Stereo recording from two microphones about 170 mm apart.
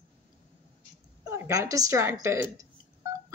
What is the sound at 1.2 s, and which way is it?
Speech, 15° right (ahead or behind).